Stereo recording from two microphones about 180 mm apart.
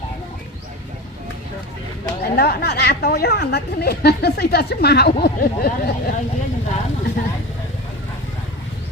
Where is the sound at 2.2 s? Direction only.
60° left (ahead or behind).